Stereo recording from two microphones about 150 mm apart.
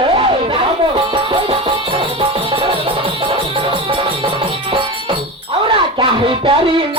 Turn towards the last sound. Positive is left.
turn(degrees=-35)  # may be behind; listen again after turning